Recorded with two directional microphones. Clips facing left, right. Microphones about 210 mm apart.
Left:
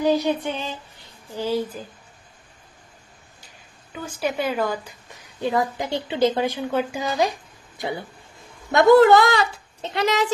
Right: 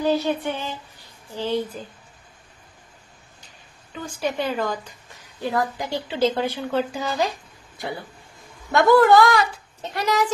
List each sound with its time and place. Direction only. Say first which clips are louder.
0.0 s speech: left 1 dB; 15° left (ahead or behind)
1.8 s speech: even; 5° left (ahead or behind)
3.9 s a woman's voice: even; 10° left (ahead or behind)
5.4 s a woman's voice: left 2 dB; 20° left (ahead or behind)